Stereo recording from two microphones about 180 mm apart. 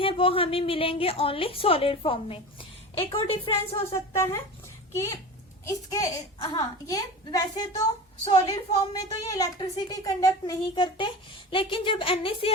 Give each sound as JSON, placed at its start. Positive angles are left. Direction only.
{"t": 0.0, "sound": "a woman's voice", "side_deg": 30}
{"t": 3.8, "sound": "speech", "side_deg": 15}
{"t": 5.6, "sound": "a woman's voice", "side_deg": 20}